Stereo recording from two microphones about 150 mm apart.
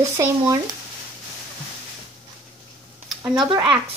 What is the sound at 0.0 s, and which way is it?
Speech, 20° right (ahead or behind).